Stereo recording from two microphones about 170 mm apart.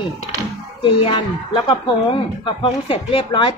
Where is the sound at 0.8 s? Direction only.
30° left (ahead or behind).